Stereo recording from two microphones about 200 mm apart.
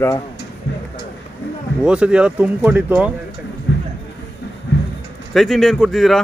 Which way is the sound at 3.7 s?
60° left (ahead or behind).